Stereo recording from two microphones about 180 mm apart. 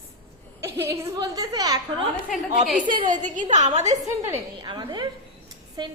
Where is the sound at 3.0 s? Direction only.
45° right (ahead or behind).